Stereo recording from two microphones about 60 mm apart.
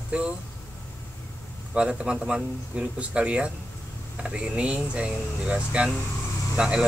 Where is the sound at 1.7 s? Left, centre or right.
Centre.